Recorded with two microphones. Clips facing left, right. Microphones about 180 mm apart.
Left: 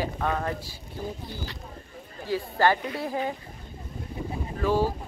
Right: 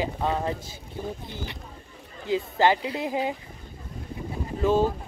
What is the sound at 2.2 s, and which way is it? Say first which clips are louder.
Speech: right 2 dB; 20° right (ahead or behind).